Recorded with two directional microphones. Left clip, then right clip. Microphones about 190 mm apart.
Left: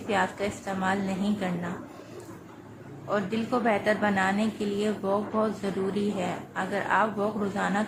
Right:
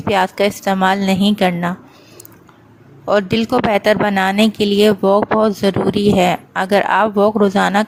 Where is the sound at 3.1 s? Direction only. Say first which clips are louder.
Right 13 dB; 55° right (ahead or behind).